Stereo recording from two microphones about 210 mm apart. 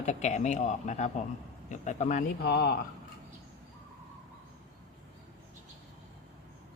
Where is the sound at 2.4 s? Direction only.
50° left (ahead or behind).